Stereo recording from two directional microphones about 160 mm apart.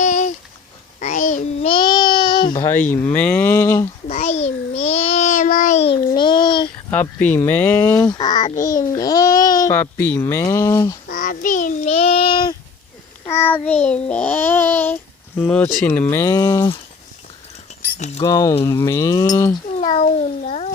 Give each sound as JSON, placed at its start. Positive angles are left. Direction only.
{"t": 0.0, "sound": "a sound", "side_deg": 50}
{"t": 0.9, "sound": "child singing", "side_deg": 55}
{"t": 1.6, "sound": "babbling", "side_deg": 30}
{"t": 2.6, "sound": "speech", "side_deg": 10}
{"t": 4.1, "sound": "child singing", "side_deg": 45}
{"t": 6.1, "sound": "child singing", "side_deg": 30}
{"t": 6.9, "sound": "speech", "side_deg": 10}
{"t": 7.9, "sound": "a child's voice", "side_deg": 25}
{"t": 11.1, "sound": "child singing", "side_deg": 55}
{"t": 13.3, "sound": "a child's voice", "side_deg": 10}
{"t": 17.8, "sound": "keys jangling", "side_deg": 60}
{"t": 18.2, "sound": "a child's voice", "side_deg": 20}
{"t": 19.8, "sound": "speech", "side_deg": 45}